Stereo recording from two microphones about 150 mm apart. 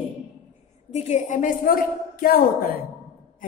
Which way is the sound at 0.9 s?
50° left (ahead or behind).